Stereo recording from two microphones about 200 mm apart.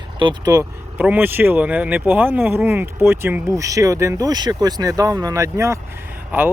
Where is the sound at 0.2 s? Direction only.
20° right (ahead or behind).